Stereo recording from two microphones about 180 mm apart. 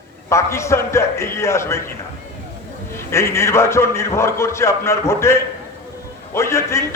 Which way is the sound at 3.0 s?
15° left (ahead or behind).